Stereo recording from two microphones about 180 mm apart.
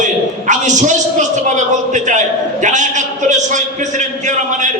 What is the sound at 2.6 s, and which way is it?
Speech, 45° right (ahead or behind).